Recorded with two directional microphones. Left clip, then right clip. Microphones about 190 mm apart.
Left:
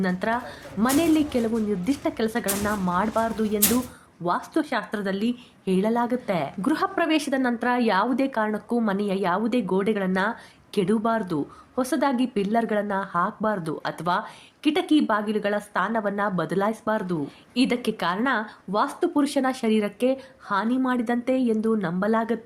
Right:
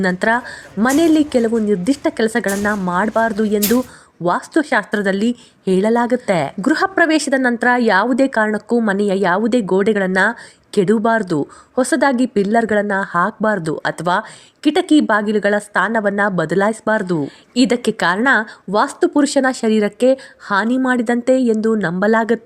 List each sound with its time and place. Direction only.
0.0 s a woman's voice: 45° right (ahead or behind)